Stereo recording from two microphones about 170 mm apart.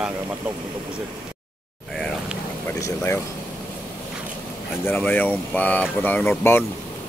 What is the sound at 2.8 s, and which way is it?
Speech, 15° left (ahead or behind).